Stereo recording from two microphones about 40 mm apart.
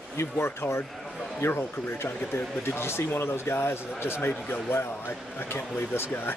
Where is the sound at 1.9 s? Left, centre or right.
Left.